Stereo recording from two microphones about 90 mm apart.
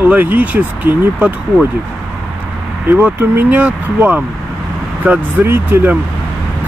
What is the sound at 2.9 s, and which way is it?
Speech, 20° right (ahead or behind).